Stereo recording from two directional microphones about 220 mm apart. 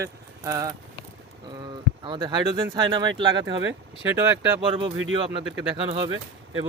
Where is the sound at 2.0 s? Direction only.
20° right (ahead or behind).